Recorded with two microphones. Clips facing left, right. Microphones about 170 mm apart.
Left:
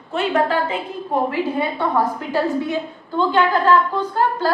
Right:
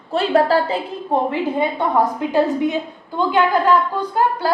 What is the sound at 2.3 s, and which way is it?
A woman's voice, 20° right (ahead or behind).